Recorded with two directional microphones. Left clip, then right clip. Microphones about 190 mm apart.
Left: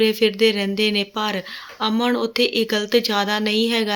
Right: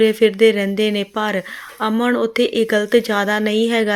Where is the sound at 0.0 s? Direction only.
25° right (ahead or behind).